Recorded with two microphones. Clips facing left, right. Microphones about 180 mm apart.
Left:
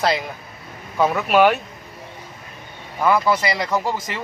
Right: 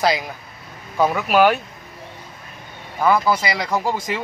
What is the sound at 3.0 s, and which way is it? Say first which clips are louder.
Speech: even; centre (ahead or behind).